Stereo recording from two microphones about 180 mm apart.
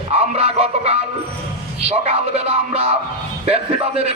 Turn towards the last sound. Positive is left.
turn(degrees=-35)  # may be behind; listen again after turning